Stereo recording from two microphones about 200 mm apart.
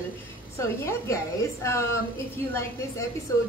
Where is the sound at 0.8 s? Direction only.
15° left (ahead or behind).